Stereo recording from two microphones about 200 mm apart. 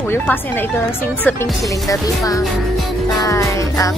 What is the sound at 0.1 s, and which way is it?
Speech, 10° left (ahead or behind).